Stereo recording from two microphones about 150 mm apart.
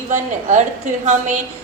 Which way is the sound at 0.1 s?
50° right (ahead or behind).